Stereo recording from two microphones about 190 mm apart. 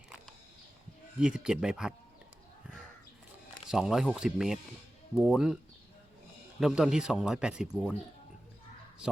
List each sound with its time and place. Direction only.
1.2 s speech: 5° right (ahead or behind)
3.7 s speech: 5° right (ahead or behind)
6.6 s speech: centre (ahead or behind)